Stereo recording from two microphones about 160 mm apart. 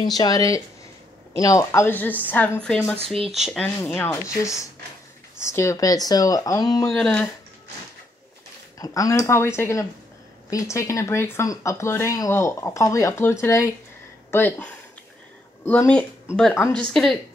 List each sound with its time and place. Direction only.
0.2 s a woman's voice: 20° left (ahead or behind); by 3.6 s centre (ahead or behind)
3.6 s a woman's voice: 10° left (ahead or behind)
7.0 s a woman's voice: 10° left (ahead or behind)
8.7 s a woman's voice: 20° left (ahead or behind); by 17.2 s centre (ahead or behind)